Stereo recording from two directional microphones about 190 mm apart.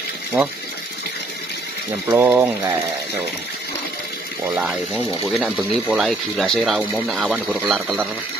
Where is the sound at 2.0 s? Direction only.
10° right (ahead or behind).